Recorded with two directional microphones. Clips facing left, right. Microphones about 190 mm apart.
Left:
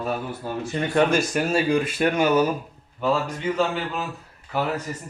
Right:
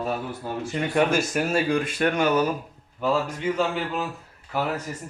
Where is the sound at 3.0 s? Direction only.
5° right (ahead or behind).